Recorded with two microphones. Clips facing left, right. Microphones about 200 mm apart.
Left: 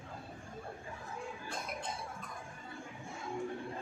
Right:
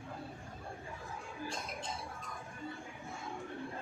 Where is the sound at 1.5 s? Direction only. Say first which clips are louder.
Left 1 dB; 55° left (ahead or behind).